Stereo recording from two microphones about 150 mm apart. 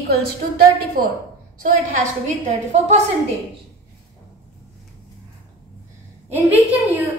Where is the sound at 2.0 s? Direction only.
50° right (ahead or behind).